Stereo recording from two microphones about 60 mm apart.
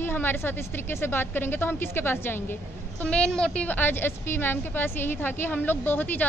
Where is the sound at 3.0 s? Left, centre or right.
Centre.